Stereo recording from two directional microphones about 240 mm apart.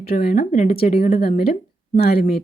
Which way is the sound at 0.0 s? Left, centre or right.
Left.